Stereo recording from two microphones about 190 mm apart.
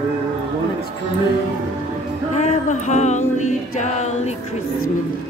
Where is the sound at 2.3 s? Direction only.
35° left (ahead or behind).